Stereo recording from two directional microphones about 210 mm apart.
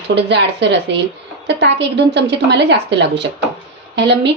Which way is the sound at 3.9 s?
55° right (ahead or behind).